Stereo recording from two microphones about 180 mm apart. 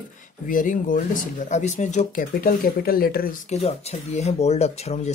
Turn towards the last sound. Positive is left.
turn(degrees=35)  # may be behind; listen again after turning